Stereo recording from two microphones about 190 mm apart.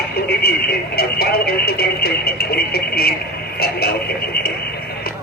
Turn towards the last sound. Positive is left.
turn(degrees=55)  # may be behind; listen again after turning